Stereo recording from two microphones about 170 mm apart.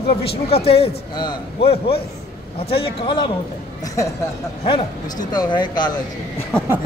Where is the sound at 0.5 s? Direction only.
35° left (ahead or behind).